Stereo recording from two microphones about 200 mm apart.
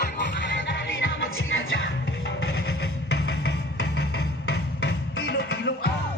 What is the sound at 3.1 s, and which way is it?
Music, 65° left (ahead or behind).